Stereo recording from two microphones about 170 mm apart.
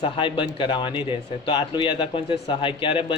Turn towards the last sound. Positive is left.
turn(degrees=30)  # may be behind; listen again after turning